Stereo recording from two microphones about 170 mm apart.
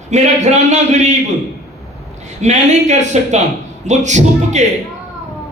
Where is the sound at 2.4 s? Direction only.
45° right (ahead or behind).